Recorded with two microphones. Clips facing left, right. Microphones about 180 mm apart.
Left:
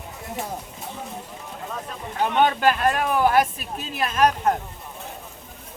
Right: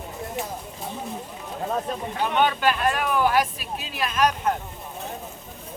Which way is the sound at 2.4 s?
45° left (ahead or behind).